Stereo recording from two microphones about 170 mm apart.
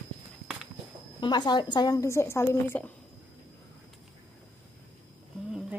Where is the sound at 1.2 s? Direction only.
25° left (ahead or behind).